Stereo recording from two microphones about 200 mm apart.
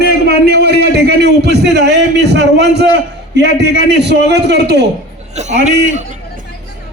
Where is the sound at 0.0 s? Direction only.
50° right (ahead or behind).